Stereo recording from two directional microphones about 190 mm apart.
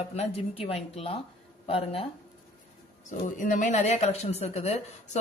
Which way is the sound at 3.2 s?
45° left (ahead or behind).